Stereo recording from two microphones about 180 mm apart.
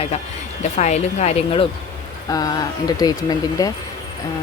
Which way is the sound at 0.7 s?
40° left (ahead or behind).